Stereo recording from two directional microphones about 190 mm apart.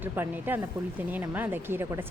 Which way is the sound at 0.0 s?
10° right (ahead or behind).